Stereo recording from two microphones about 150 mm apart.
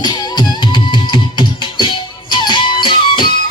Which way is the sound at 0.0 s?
30° left (ahead or behind).